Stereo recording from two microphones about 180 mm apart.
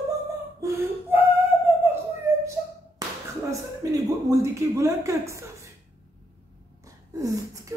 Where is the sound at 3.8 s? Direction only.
20° right (ahead or behind).